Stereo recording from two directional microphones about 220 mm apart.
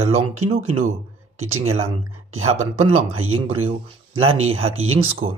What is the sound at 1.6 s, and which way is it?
Speech, 25° right (ahead or behind).